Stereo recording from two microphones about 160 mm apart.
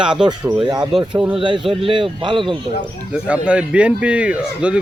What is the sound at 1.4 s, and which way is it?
Speech, 30° right (ahead or behind).